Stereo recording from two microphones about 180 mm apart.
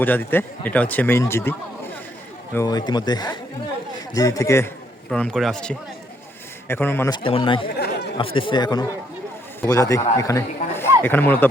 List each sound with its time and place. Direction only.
0.0 s speech: 10° left (ahead or behind)
5.1 s a man's voice: 5° left (ahead or behind)
7.1 s speech: 30° left (ahead or behind); by 11.4 s 10° left (ahead or behind)